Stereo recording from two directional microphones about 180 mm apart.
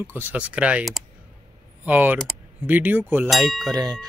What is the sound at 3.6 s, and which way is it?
Speech, 20° right (ahead or behind).